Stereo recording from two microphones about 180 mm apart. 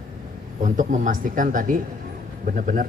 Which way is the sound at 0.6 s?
45° right (ahead or behind).